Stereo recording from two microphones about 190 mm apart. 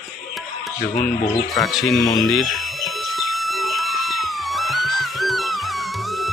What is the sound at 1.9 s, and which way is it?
Speech, 20° left (ahead or behind).